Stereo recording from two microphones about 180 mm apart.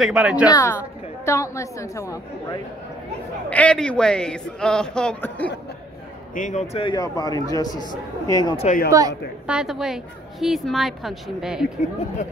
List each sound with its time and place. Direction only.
0.0 s a man's voice: 5° right (ahead or behind)
0.5 s a woman's voice: 15° left (ahead or behind)
3.4 s a man's voice: 5° left (ahead or behind)
6.3 s a man's voice: 45° left (ahead or behind)
6.8 s a man's voice: 25° left (ahead or behind)
8.6 s a man's voice: 50° left (ahead or behind)
9.5 s a man's voice: 5° right (ahead or behind)